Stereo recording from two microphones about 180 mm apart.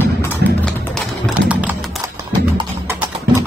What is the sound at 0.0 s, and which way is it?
Music, 10° left (ahead or behind).